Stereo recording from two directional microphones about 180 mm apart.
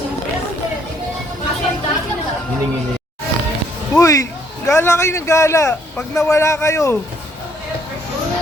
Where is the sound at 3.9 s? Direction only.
15° left (ahead or behind).